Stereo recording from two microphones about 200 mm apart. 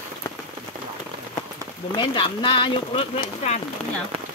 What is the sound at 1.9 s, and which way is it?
Speech, 25° left (ahead or behind).